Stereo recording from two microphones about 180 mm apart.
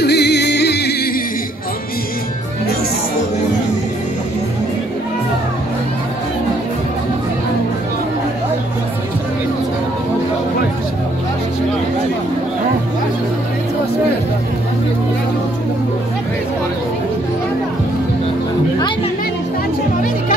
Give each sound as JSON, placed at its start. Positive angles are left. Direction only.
{"t": 0.0, "sound": "music", "side_deg": 65}